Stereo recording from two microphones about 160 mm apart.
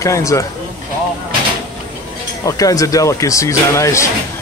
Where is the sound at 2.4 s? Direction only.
20° left (ahead or behind).